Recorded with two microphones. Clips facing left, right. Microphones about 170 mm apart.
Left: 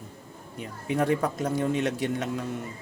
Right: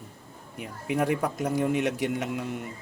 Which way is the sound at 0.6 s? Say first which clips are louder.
Even; 10° right (ahead or behind).